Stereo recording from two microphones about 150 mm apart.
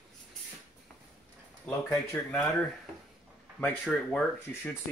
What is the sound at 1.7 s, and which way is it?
Speech, 5° left (ahead or behind).